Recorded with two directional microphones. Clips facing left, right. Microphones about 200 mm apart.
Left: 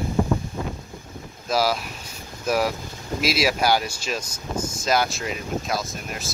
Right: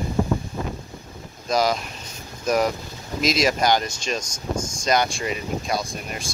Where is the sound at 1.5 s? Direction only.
5° left (ahead or behind).